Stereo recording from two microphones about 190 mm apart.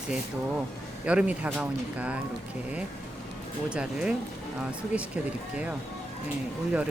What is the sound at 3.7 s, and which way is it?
Speech, 5° right (ahead or behind).